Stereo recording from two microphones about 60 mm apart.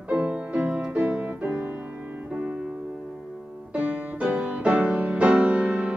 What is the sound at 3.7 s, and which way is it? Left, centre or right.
Music, right.